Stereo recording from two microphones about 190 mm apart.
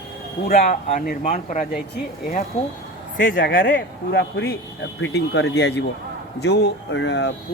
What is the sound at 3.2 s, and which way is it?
Speech, 45° left (ahead or behind).